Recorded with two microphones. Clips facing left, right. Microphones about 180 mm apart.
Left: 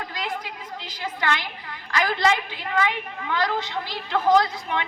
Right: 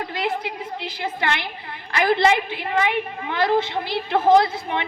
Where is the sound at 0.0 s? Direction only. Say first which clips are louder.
Right 6 dB; 25° right (ahead or behind).